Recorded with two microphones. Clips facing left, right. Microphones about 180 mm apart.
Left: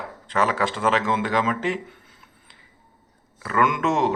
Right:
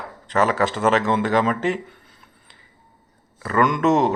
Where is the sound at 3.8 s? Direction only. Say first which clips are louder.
Right 4 dB; 40° right (ahead or behind).